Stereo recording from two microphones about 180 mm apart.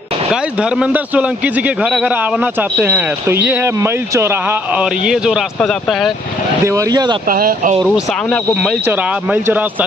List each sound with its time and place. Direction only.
0.3 s a man's voice: 5° right (ahead or behind)
6.6 s speech: 15° right (ahead or behind)
7.2 s speech: 55° right (ahead or behind)
7.8 s a man's voice: centre (ahead or behind)